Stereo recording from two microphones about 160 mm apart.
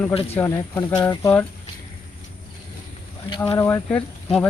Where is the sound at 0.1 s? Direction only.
40° left (ahead or behind).